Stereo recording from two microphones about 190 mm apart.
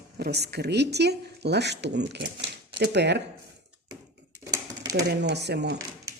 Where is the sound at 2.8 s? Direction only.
65° right (ahead or behind).